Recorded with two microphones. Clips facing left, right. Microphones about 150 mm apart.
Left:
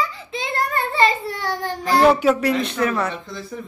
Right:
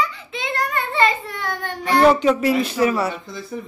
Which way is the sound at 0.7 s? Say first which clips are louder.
Left 1 dB; 35° left (ahead or behind).